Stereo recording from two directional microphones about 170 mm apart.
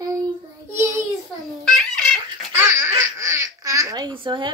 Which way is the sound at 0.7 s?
15° right (ahead or behind).